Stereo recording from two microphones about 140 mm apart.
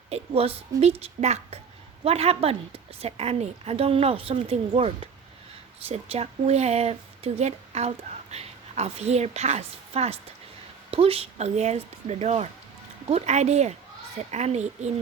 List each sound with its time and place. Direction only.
0.1 s a woman's voice: 45° right (ahead or behind)